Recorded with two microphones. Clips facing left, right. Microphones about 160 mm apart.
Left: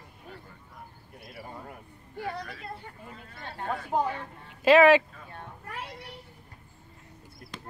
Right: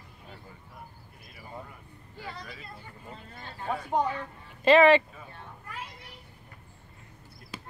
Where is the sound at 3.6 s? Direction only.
Centre (ahead or behind).